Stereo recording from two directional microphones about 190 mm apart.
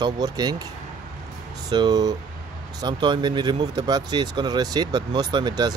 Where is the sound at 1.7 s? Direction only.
20° right (ahead or behind).